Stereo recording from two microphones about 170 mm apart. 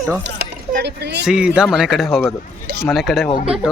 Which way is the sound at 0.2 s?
75° right (ahead or behind).